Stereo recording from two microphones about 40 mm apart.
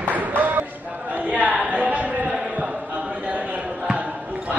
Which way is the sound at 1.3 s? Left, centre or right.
Right.